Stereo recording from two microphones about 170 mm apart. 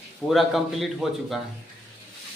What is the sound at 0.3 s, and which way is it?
A man's voice, centre (ahead or behind).